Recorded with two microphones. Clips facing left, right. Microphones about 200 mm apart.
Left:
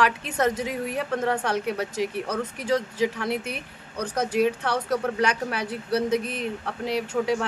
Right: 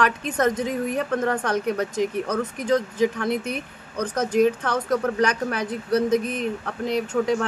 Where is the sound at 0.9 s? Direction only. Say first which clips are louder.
Left 1 dB; 10° left (ahead or behind).